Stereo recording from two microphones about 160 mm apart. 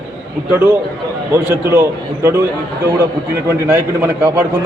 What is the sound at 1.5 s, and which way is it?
Speech, 15° right (ahead or behind).